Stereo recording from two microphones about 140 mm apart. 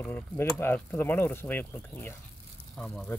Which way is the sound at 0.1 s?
15° left (ahead or behind).